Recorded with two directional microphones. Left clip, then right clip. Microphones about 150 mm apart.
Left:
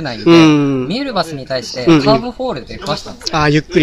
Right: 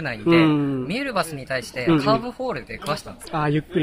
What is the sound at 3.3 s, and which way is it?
Speech, 20° left (ahead or behind).